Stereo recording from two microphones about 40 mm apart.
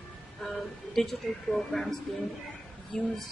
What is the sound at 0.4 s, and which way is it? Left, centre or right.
Speech, centre.